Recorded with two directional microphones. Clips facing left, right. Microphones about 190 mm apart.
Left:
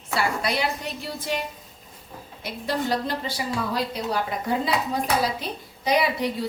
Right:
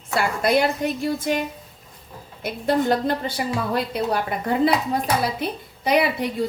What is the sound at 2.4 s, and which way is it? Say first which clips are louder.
Speech: right 6 dB; 50° right (ahead or behind).